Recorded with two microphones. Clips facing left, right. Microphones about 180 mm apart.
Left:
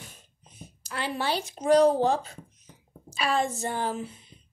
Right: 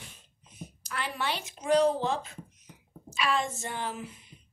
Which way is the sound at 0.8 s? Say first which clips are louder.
Left 4 dB; 30° left (ahead or behind).